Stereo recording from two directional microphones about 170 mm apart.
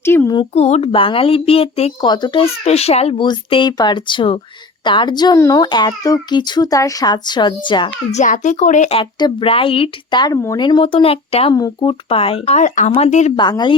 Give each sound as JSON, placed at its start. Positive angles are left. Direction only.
{"t": 0.0, "sound": "a sound", "side_deg": 15}
{"t": 0.3, "sound": "a child's voice", "side_deg": 40}
{"t": 8.1, "sound": "a woman's voice", "side_deg": 45}
{"t": 9.1, "sound": "speech", "side_deg": 30}
{"t": 11.5, "sound": "a woman's voice", "side_deg": 25}
{"t": 13.3, "sound": "a child's voice", "side_deg": 25}